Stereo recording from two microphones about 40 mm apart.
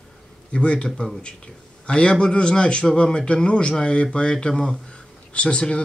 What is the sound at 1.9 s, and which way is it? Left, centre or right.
Speech, left.